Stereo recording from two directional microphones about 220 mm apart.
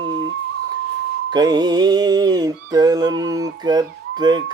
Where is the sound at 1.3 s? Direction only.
20° right (ahead or behind).